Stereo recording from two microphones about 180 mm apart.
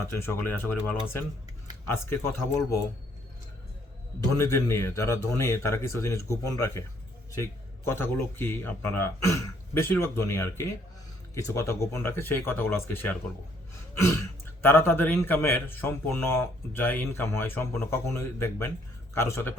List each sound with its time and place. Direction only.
0.0 s a man's voice: 15° left (ahead or behind)
4.4 s a man's voice: 15° left (ahead or behind)
14.6 s a man's voice: 10° left (ahead or behind)